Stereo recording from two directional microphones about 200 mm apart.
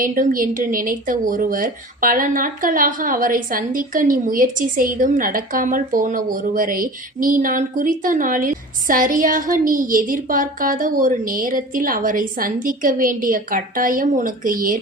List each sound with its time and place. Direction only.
0.0 s speech: 45° right (ahead or behind)